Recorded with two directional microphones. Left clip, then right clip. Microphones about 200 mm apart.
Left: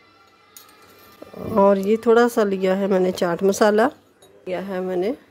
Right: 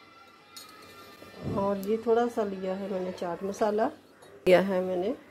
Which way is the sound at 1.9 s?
40° left (ahead or behind).